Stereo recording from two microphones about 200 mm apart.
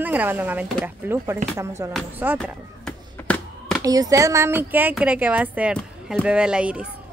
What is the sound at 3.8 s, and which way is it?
A woman's voice, 15° right (ahead or behind).